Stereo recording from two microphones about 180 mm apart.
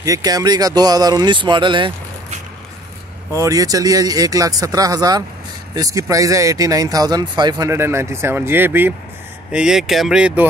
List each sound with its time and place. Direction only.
0.0 s speech: 20° right (ahead or behind)
3.3 s speech: 20° right (ahead or behind)